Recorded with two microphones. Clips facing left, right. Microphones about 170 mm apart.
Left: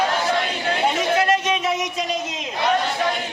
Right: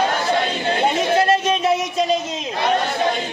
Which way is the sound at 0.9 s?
30° right (ahead or behind).